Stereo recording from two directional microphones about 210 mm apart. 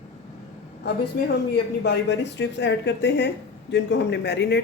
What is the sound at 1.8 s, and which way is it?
Speech, 55° left (ahead or behind).